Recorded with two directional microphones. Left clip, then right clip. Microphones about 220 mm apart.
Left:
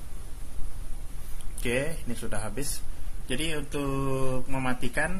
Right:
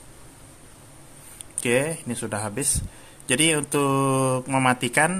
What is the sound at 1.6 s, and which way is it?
Speech, 20° right (ahead or behind).